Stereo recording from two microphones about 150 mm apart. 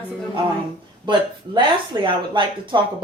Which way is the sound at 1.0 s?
30° right (ahead or behind).